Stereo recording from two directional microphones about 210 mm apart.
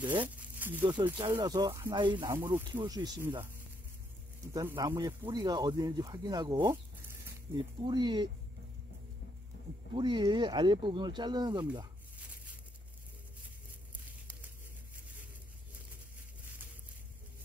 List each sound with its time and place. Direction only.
0.0 s speech: 20° right (ahead or behind)
0.6 s speech: 10° right (ahead or behind)
4.6 s speech: 15° right (ahead or behind)
7.8 s speech: 20° right (ahead or behind)
9.9 s speech: 20° right (ahead or behind)